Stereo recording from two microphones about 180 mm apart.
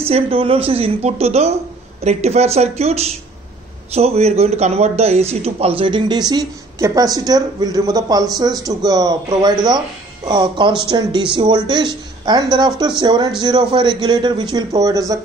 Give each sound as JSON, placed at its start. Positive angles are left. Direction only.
{"t": 0.1, "sound": "a woman's voice", "side_deg": -30}